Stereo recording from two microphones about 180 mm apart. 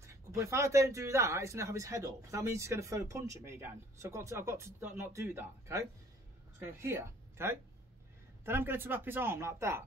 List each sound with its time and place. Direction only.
0.0 s a woman's voice: 15° right (ahead or behind)